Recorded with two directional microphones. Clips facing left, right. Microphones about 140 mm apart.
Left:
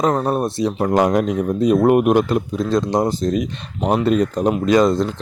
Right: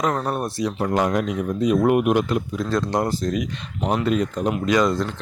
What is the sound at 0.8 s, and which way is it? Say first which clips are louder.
A man's voice: left 5 dB; 40° left (ahead or behind).